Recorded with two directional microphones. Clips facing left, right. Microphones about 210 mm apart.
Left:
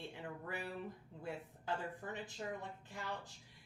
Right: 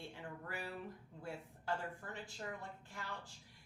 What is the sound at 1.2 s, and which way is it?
A woman's voice, 20° left (ahead or behind).